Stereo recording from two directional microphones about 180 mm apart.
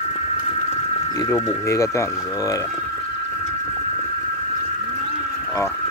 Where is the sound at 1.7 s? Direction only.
15° left (ahead or behind).